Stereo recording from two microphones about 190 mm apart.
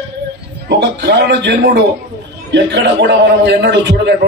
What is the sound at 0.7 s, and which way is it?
A man's voice, 65° right (ahead or behind).